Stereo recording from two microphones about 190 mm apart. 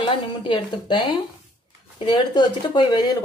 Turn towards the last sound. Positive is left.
turn(degrees=20)  # may be behind; listen again after turning